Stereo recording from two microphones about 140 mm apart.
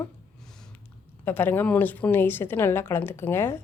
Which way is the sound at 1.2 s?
15° left (ahead or behind).